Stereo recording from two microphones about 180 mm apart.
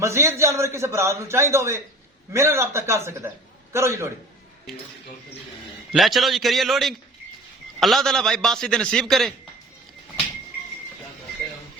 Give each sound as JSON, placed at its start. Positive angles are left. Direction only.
{"t": 0.0, "sound": "a man's voice", "side_deg": -15}
{"t": 5.9, "sound": "a man's voice", "side_deg": 0}